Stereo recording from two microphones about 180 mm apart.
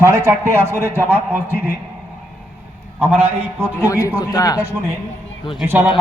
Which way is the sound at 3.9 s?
15° left (ahead or behind).